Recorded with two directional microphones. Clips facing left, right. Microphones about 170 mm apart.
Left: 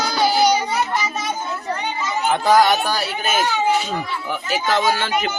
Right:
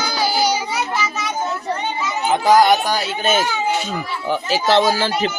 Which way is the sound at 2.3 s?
10° right (ahead or behind).